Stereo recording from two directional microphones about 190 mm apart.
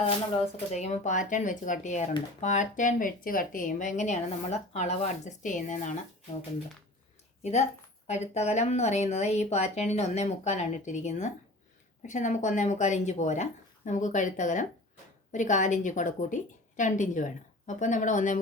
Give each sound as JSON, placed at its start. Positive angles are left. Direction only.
{"t": 0.7, "sound": "a woman's voice", "side_deg": 35}
{"t": 7.4, "sound": "a woman's voice", "side_deg": 35}